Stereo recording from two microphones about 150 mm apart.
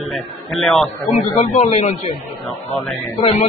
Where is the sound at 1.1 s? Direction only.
50° left (ahead or behind).